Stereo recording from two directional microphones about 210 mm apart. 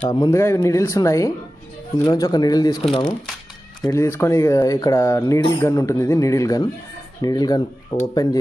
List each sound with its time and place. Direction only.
0.1 s speech: 15° left (ahead or behind)